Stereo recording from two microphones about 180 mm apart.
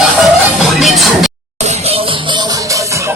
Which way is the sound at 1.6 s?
30° right (ahead or behind).